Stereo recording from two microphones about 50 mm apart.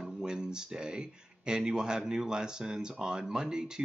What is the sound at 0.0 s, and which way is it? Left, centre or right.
Speech, centre.